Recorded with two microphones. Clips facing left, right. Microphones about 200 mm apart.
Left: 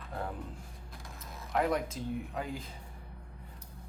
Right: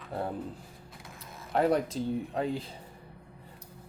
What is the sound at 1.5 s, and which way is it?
Speech, 35° right (ahead or behind).